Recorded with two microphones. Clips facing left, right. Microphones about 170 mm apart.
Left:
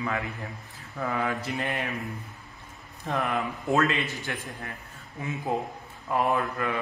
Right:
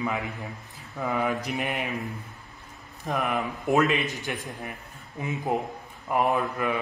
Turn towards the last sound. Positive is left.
turn(degrees=-15)  # may be behind; listen again after turning